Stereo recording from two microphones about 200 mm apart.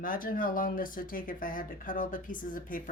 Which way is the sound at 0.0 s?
45° left (ahead or behind).